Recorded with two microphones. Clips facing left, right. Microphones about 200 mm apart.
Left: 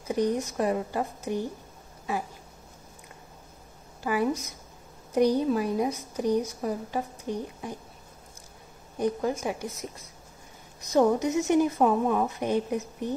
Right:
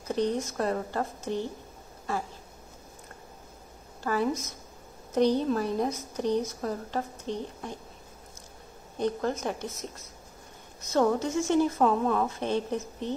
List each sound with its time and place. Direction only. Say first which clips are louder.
0.1 s a woman's voice: left 2 dB; 10° left (ahead or behind)
4.0 s a woman's voice: left 1 dB; 10° left (ahead or behind)
8.9 s a woman's voice: left 1 dB; 10° left (ahead or behind)
10.9 s a woman's voice: left 3 dB; 15° left (ahead or behind)